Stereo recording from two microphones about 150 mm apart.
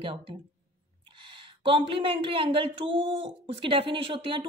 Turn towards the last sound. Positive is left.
turn(degrees=-35)  # may be behind; listen again after turning